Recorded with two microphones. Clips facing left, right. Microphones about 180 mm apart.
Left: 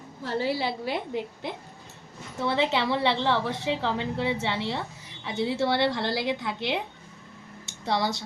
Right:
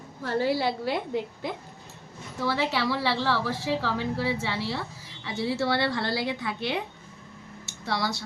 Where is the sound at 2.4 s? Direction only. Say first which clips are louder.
Left 2 dB; 25° left (ahead or behind).